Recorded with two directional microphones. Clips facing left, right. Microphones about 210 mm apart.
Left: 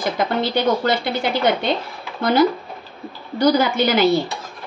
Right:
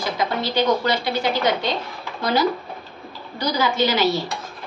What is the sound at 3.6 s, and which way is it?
Speech, 55° left (ahead or behind).